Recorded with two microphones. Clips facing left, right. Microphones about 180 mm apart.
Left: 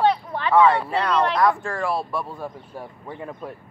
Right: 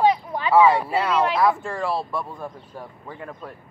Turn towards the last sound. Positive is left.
turn(degrees=10)  # may be behind; listen again after turning